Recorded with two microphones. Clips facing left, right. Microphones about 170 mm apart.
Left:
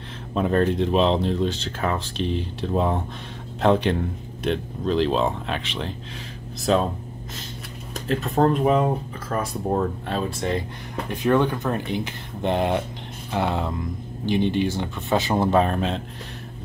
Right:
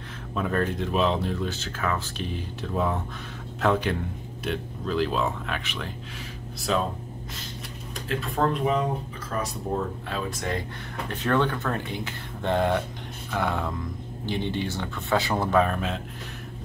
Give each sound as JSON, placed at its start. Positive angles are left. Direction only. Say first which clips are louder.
{"t": 0.3, "sound": "speech", "louder": "left 6 dB", "side_deg": 25}
{"t": 7.9, "sound": "speech", "louder": "left 6 dB", "side_deg": 40}
{"t": 9.3, "sound": "speech", "louder": "left 5 dB", "side_deg": 55}
{"t": 11.1, "sound": "speech", "louder": "left 4 dB", "side_deg": 10}